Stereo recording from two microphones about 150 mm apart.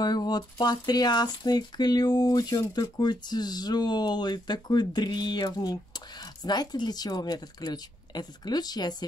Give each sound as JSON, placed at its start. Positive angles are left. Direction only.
{"t": 0.0, "sound": "speech", "side_deg": 25}